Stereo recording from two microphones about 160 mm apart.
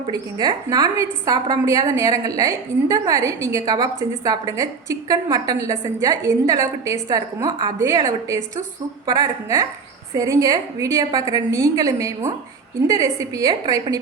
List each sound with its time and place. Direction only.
0.1 s a woman's voice: 25° right (ahead or behind)